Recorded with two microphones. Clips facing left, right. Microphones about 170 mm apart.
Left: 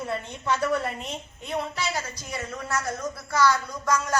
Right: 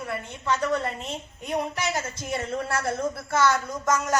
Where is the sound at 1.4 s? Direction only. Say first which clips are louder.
Right 2 dB; 15° right (ahead or behind).